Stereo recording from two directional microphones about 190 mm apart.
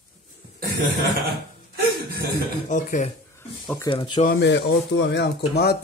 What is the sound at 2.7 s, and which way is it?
Speech, 40° left (ahead or behind).